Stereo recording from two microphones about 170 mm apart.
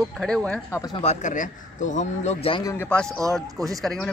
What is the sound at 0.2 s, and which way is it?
Speech, 5° left (ahead or behind).